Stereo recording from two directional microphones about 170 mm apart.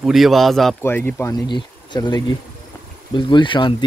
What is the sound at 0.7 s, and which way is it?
Speech, 15° left (ahead or behind).